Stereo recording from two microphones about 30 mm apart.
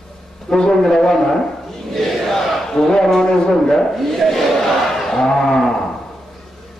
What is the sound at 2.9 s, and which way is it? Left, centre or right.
A man's voice, centre.